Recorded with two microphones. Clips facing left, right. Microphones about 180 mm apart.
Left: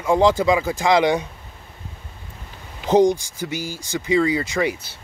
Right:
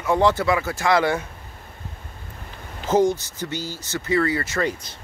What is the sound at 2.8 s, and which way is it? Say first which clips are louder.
Speech: left 3 dB; 15° left (ahead or behind).